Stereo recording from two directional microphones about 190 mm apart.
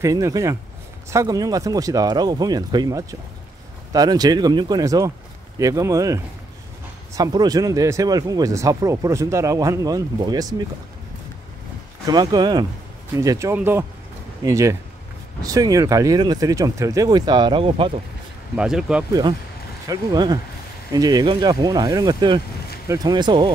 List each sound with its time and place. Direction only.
0.0 s speech: 15° right (ahead or behind)
12.1 s speech: 20° right (ahead or behind)
18.6 s speech: 5° right (ahead or behind)
19.9 s speech: 20° right (ahead or behind)